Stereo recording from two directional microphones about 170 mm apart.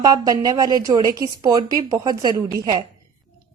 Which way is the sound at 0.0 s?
20° right (ahead or behind).